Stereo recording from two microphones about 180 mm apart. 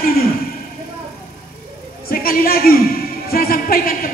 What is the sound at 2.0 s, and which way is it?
A man's voice, 55° left (ahead or behind).